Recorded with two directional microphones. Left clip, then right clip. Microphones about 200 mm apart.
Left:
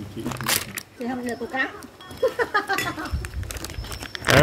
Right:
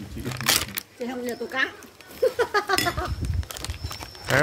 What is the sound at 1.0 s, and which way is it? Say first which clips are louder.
Speech: left 1 dB; 60° right (ahead or behind).